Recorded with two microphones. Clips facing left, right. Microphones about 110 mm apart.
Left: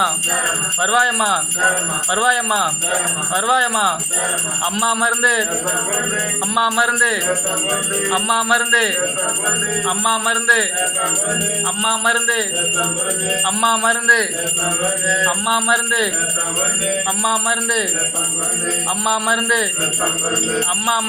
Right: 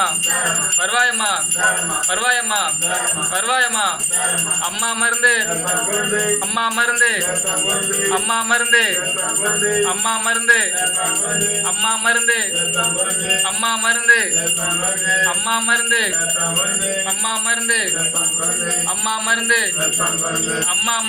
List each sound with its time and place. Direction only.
0.8 s jingle bell: 25° left (ahead or behind)
6.5 s jingle bell: 20° left (ahead or behind)
8.1 s music: 15° left (ahead or behind)
11.8 s jingle bell: 20° left (ahead or behind)
13.6 s jingle bell: 25° left (ahead or behind)
15.3 s jingle bell: 20° left (ahead or behind)
17.2 s jingle bell: 25° left (ahead or behind)
19.0 s jingle bell: 25° left (ahead or behind)